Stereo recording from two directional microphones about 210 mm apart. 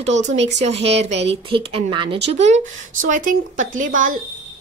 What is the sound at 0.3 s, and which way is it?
A woman's voice, 30° right (ahead or behind).